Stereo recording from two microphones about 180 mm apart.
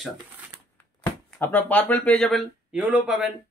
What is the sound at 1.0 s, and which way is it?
Speech, 10° left (ahead or behind).